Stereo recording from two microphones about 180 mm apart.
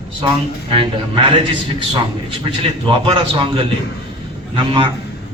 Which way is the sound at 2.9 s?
30° right (ahead or behind).